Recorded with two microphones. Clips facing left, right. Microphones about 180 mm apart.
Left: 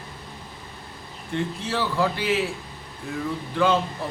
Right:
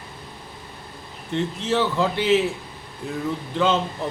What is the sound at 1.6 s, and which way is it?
Speech, 20° right (ahead or behind).